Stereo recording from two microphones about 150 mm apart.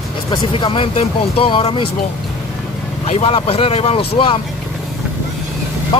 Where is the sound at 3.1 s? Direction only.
40° left (ahead or behind).